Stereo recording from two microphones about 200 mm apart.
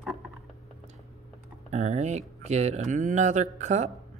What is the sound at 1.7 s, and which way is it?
Speech, 35° right (ahead or behind).